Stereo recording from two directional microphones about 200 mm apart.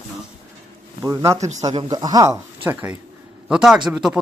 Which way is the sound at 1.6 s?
20° right (ahead or behind).